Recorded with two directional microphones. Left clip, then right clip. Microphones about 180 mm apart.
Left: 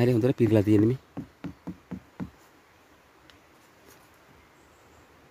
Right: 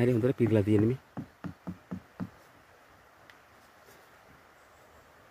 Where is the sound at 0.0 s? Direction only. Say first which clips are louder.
Left 3 dB; 20° left (ahead or behind).